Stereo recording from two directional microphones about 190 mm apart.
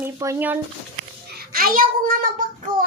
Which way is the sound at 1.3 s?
50° right (ahead or behind).